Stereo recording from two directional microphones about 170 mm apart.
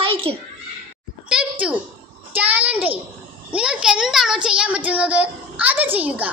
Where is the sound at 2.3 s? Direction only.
10° right (ahead or behind).